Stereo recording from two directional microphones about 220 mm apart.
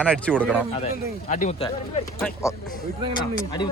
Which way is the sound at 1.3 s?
35° left (ahead or behind).